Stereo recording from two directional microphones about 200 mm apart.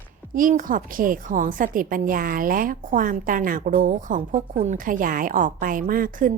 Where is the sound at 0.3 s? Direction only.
40° right (ahead or behind).